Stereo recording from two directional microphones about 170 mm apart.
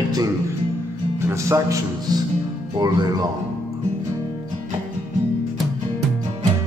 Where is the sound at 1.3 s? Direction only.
15° right (ahead or behind).